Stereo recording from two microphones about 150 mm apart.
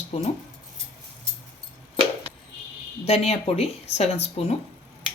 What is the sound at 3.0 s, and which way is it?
Speech, 45° left (ahead or behind).